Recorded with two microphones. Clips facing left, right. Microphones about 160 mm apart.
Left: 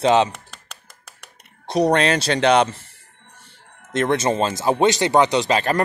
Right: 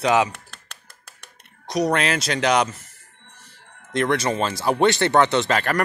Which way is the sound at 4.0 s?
25° left (ahead or behind).